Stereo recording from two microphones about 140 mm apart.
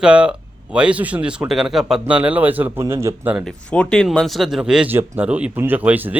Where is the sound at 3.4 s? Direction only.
5° left (ahead or behind).